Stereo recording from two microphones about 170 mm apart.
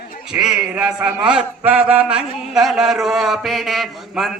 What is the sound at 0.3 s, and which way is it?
Speech, 5° right (ahead or behind).